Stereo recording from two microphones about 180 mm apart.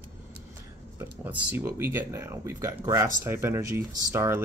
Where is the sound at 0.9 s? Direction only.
10° right (ahead or behind).